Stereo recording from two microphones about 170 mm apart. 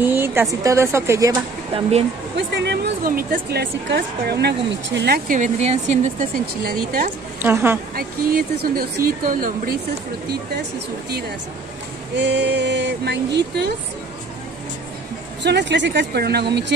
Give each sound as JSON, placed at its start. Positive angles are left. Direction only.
{"t": 0.0, "sound": "speech", "side_deg": -10}
{"t": 2.3, "sound": "speech", "side_deg": -90}
{"t": 5.4, "sound": "speech", "side_deg": -40}
{"t": 6.6, "sound": "a woman's voice", "side_deg": -60}
{"t": 7.4, "sound": "speech", "side_deg": -15}
{"t": 7.9, "sound": "a woman's voice", "side_deg": -60}
{"t": 12.2, "sound": "speech", "side_deg": -90}
{"t": 15.4, "sound": "speech", "side_deg": -90}